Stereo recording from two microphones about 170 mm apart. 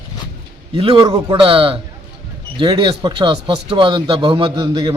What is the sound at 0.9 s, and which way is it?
Speech, 25° right (ahead or behind).